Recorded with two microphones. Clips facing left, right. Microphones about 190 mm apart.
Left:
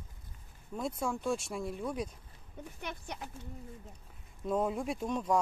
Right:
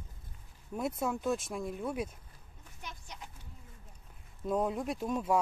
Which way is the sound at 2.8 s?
60° left (ahead or behind).